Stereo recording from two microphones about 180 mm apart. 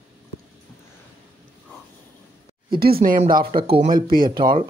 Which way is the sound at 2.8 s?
55° right (ahead or behind).